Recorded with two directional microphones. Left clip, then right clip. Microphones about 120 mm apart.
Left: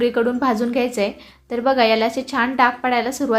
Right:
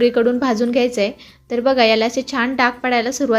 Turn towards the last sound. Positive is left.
turn(degrees=-20)  # may be behind; listen again after turning